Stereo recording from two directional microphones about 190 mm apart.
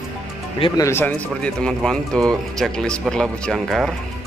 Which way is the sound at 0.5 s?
30° left (ahead or behind).